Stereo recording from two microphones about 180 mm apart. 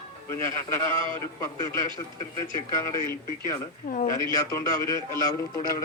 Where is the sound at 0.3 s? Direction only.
15° left (ahead or behind).